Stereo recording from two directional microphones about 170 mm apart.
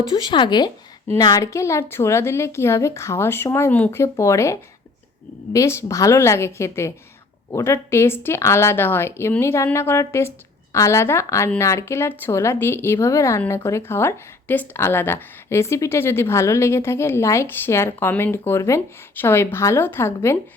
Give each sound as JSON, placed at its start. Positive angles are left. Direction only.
{"t": 0.1, "sound": "a woman's voice", "side_deg": 25}
{"t": 5.5, "sound": "a woman's voice", "side_deg": 15}